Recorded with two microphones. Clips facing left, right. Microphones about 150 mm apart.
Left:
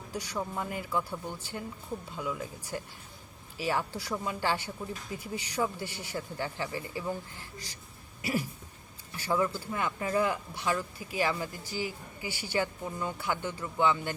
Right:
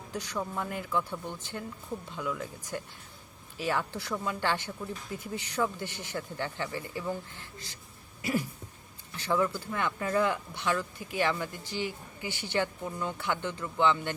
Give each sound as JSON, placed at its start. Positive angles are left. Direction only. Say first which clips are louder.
{"t": 0.1, "sound": "speech", "louder": "even", "side_deg": 10}
{"t": 8.2, "sound": "speech", "louder": "right 1 dB", "side_deg": 10}